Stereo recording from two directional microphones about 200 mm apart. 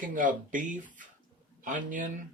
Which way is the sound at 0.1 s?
40° right (ahead or behind).